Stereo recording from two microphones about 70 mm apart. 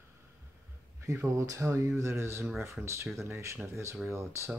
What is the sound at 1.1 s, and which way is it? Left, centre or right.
Speech, right.